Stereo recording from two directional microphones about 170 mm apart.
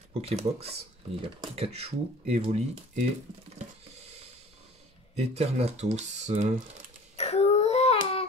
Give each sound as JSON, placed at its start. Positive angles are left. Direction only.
{"t": 0.2, "sound": "speech", "side_deg": -35}
{"t": 5.1, "sound": "speech", "side_deg": -40}
{"t": 7.2, "sound": "a sound", "side_deg": 35}